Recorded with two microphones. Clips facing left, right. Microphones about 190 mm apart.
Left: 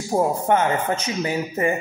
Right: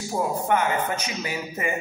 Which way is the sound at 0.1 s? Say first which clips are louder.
Left 6 dB; 45° left (ahead or behind).